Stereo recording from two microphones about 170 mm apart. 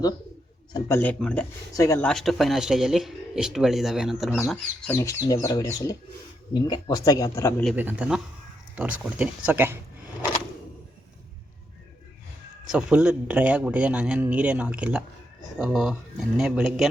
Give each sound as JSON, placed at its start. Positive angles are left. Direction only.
{"t": 0.9, "sound": "speech", "side_deg": 10}
{"t": 2.0, "sound": "speech", "side_deg": 0}
{"t": 4.9, "sound": "speech", "side_deg": 15}
{"t": 7.8, "sound": "speech", "side_deg": -10}
{"t": 12.7, "sound": "speech", "side_deg": -5}